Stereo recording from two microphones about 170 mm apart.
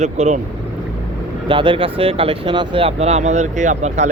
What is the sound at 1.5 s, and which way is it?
Speech, 30° right (ahead or behind).